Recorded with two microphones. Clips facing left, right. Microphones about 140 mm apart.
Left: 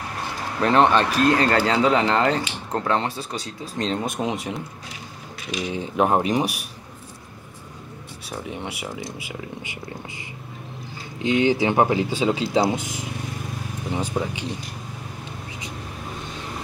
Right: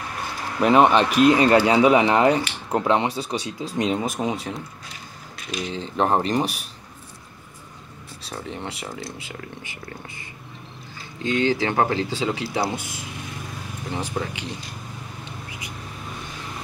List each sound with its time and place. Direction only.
0.6 s a man's voice: 10° right (ahead or behind)
4.0 s speech: centre (ahead or behind)
5.7 s speech: 10° left (ahead or behind)
8.3 s speech: 10° left (ahead or behind)
11.2 s speech: 15° left (ahead or behind)